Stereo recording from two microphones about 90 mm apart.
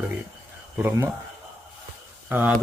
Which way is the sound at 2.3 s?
20° right (ahead or behind).